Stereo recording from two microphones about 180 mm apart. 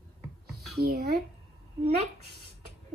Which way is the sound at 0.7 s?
60° right (ahead or behind).